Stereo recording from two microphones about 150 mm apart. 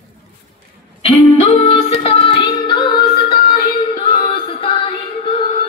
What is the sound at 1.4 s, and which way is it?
Music, 40° left (ahead or behind).